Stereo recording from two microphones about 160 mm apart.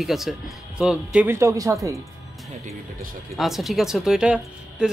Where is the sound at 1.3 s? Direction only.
20° right (ahead or behind).